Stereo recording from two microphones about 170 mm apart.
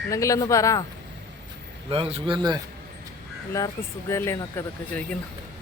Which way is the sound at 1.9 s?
35° right (ahead or behind).